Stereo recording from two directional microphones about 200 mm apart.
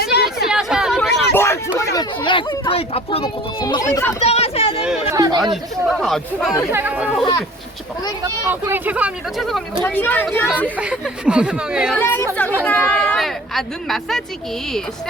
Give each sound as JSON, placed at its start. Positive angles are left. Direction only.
{"t": 0.0, "sound": "chatter", "side_deg": 55}
{"t": 0.4, "sound": "chatter", "side_deg": -5}
{"t": 1.4, "sound": "a sound", "side_deg": 15}
{"t": 1.8, "sound": "speech", "side_deg": 20}
{"t": 4.2, "sound": "chatter", "side_deg": 30}
{"t": 5.1, "sound": "chatter", "side_deg": -20}
{"t": 5.4, "sound": "speech", "side_deg": 0}
{"t": 8.4, "sound": "speech", "side_deg": -10}
{"t": 10.8, "sound": "speech", "side_deg": -5}
{"t": 11.9, "sound": "speech", "side_deg": 10}